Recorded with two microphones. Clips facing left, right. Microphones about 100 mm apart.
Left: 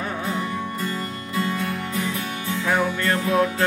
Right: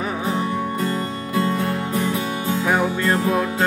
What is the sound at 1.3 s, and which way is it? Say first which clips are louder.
Music: right 4 dB; 50° right (ahead or behind).